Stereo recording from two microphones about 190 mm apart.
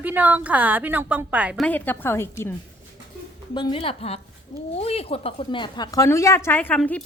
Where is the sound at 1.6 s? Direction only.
10° left (ahead or behind).